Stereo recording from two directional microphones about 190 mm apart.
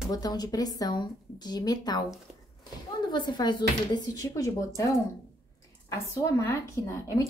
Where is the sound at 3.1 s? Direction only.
25° left (ahead or behind).